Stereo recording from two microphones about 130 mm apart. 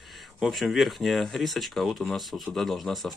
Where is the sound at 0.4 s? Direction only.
Centre (ahead or behind).